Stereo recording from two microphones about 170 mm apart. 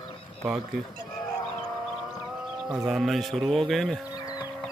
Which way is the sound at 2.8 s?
Centre (ahead or behind).